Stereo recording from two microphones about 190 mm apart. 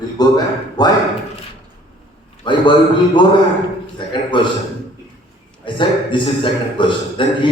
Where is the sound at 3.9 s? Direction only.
25° left (ahead or behind).